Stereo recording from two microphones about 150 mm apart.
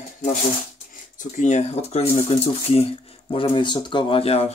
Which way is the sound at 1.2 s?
55° left (ahead or behind).